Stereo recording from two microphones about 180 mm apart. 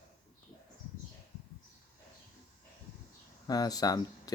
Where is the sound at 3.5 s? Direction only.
20° left (ahead or behind).